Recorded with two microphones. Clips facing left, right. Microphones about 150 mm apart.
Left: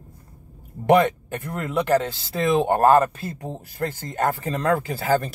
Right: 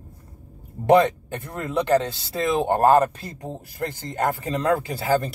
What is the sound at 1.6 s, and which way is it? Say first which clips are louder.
Speech: even; 25° right (ahead or behind).